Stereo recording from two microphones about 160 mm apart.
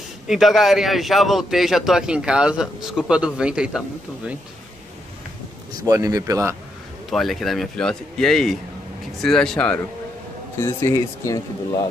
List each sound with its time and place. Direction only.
0.3 s a man's voice: centre (ahead or behind)
5.9 s speech: 20° right (ahead or behind)
7.1 s a man's voice: centre (ahead or behind)
10.6 s speech: 15° left (ahead or behind)